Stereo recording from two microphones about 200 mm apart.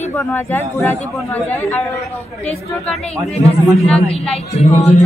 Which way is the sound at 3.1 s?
15° right (ahead or behind).